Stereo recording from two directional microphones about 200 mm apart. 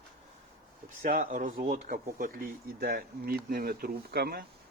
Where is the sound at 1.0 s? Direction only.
40° right (ahead or behind).